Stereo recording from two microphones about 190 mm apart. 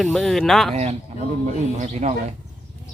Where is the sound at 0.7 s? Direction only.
35° right (ahead or behind).